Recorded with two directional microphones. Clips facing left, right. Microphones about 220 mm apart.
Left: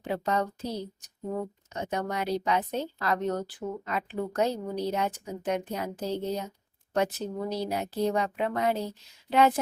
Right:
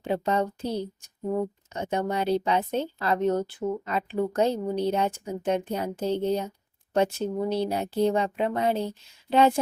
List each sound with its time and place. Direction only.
0.0 s a woman's voice: 25° right (ahead or behind)
1.7 s a woman's voice: 30° right (ahead or behind)